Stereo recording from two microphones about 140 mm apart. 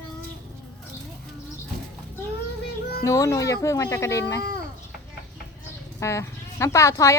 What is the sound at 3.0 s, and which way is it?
Speech, 25° left (ahead or behind).